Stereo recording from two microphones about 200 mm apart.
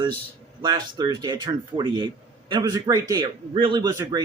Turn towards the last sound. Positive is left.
turn(degrees=-20)  # may be behind; listen again after turning